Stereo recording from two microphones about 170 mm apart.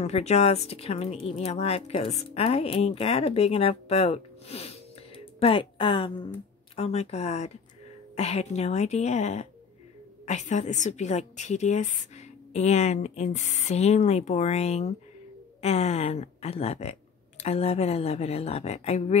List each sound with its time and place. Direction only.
0.0 s a woman's voice: 40° left (ahead or behind)